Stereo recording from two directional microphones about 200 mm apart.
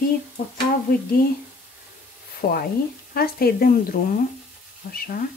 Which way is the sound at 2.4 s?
50° left (ahead or behind).